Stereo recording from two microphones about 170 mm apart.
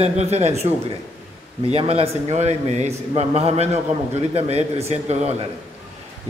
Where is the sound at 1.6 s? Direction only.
35° right (ahead or behind).